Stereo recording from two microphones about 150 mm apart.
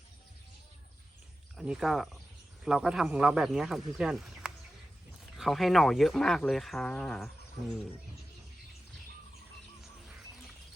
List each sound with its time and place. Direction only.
1.5 s speech: 5° right (ahead or behind)